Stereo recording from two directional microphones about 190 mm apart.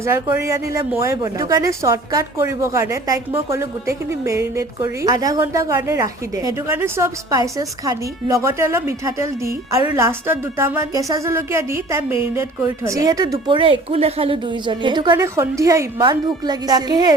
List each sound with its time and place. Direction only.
0.0 s a woman's voice: 15° right (ahead or behind)